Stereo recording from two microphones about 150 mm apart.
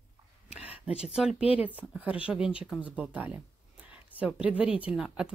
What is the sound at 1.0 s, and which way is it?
Speech, 5° right (ahead or behind).